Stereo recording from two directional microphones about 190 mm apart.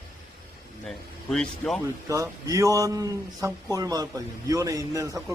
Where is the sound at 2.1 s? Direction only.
15° right (ahead or behind).